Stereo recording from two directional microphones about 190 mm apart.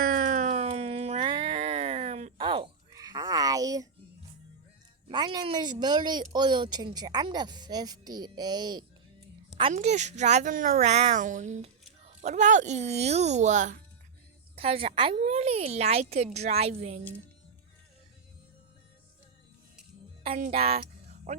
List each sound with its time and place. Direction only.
0.0 s a sound: 45° right (ahead or behind); by 3.8 s 20° right (ahead or behind)
5.0 s speech: 25° right (ahead or behind)
9.7 s speech: 35° right (ahead or behind)
14.5 s speech: 30° right (ahead or behind)
20.2 s speech: 35° right (ahead or behind)